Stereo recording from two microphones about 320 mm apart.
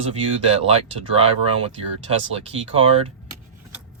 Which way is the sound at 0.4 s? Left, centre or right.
Centre.